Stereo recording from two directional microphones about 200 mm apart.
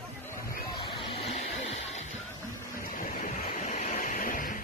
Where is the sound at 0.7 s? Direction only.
25° left (ahead or behind).